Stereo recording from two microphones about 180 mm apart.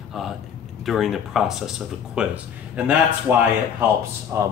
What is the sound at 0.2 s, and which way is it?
A man's voice, centre (ahead or behind).